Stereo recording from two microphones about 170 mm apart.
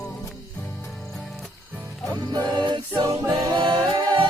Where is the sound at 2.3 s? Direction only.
25° right (ahead or behind).